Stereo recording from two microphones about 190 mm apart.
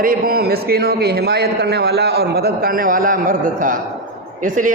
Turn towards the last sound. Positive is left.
turn(degrees=-45)  # may be behind; listen again after turning